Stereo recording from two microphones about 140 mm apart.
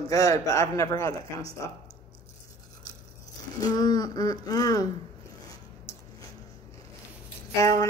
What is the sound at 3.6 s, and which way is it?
Speech, 25° left (ahead or behind).